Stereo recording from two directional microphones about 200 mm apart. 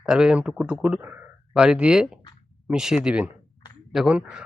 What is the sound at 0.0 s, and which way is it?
Speech, 5° right (ahead or behind).